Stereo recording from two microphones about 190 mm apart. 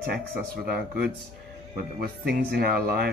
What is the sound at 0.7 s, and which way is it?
Speech, 55° right (ahead or behind).